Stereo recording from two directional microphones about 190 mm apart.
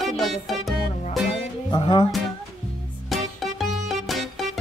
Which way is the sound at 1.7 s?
25° left (ahead or behind).